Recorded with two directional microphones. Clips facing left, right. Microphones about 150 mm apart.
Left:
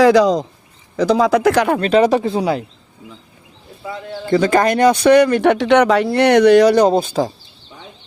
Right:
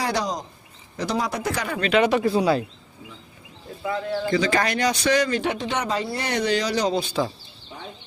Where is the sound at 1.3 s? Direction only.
90° left.